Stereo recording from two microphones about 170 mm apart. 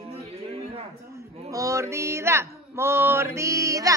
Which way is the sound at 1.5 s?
20° right (ahead or behind).